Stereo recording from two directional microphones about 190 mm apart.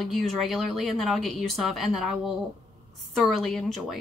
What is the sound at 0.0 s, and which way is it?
Speech, centre (ahead or behind).